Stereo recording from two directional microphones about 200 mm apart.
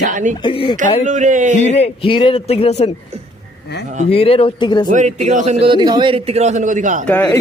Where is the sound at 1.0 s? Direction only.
40° right (ahead or behind).